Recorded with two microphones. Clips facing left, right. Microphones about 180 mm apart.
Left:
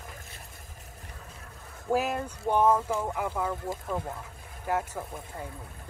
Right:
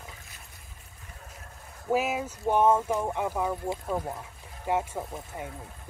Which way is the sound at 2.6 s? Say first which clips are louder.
Right 1 dB; 25° right (ahead or behind).